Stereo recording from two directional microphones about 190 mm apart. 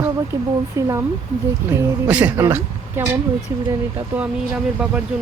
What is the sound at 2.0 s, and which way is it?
Speech, 10° right (ahead or behind).